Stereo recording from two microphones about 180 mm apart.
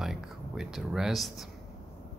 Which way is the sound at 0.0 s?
Centre (ahead or behind).